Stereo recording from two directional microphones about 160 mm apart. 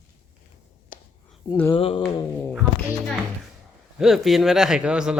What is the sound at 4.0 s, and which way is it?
A man's voice, centre (ahead or behind).